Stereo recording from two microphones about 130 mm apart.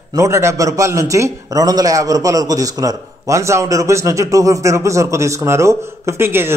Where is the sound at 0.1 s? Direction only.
20° right (ahead or behind).